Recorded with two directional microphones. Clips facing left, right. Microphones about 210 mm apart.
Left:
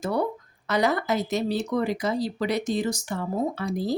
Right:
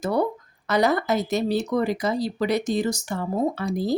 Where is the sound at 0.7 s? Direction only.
40° right (ahead or behind).